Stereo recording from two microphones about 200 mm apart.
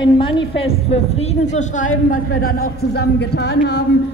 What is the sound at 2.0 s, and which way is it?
A woman's voice, 50° left (ahead or behind).